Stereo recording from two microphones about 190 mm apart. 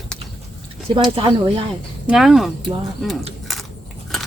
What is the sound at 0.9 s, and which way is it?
Speech, 25° right (ahead or behind).